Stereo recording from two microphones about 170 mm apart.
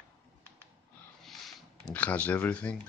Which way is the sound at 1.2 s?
Centre (ahead or behind).